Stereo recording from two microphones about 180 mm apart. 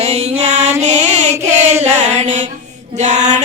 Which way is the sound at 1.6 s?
40° right (ahead or behind).